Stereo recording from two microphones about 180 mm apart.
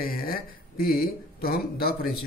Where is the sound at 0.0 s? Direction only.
55° left (ahead or behind).